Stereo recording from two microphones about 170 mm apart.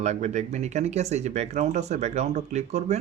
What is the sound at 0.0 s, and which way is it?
Speech, 40° right (ahead or behind).